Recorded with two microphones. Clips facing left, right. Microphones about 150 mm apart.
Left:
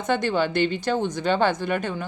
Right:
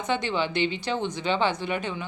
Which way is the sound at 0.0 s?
45° left (ahead or behind).